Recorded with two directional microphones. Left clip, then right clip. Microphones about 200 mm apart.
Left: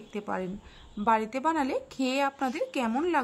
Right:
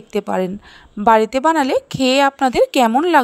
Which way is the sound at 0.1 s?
40° right (ahead or behind).